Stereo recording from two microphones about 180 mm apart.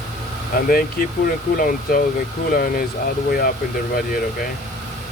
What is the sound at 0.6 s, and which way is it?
Speech, 55° left (ahead or behind).